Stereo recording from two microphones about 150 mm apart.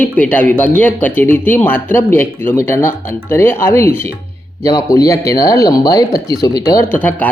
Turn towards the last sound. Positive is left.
turn(degrees=10)  # may be behind; listen again after turning